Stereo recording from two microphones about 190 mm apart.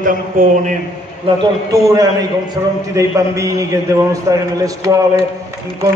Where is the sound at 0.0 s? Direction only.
45° right (ahead or behind).